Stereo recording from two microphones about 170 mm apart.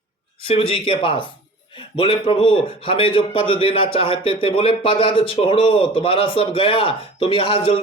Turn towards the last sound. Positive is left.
turn(degrees=35)  # may be behind; listen again after turning